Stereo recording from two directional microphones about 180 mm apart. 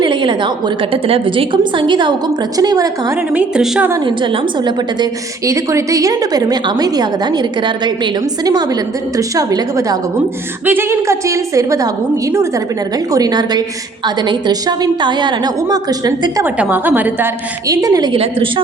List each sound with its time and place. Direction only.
0.0 s a woman's voice: 25° right (ahead or behind)
3.3 s a woman's voice: 5° right (ahead or behind)
4.0 s a woman's voice: 25° right (ahead or behind)
16.6 s a woman's voice: 10° right (ahead or behind); by 18.6 s 30° right (ahead or behind)